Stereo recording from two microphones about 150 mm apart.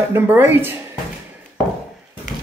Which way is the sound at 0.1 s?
15° right (ahead or behind).